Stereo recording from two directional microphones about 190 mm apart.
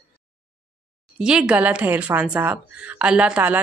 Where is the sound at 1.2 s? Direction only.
5° right (ahead or behind).